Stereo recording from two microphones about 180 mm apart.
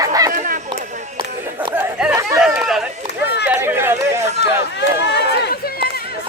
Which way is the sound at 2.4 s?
5° right (ahead or behind).